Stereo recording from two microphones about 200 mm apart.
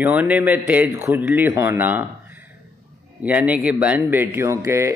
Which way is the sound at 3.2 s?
10° right (ahead or behind).